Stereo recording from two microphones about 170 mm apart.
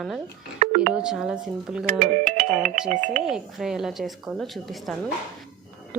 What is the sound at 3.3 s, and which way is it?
A woman's voice, 5° right (ahead or behind).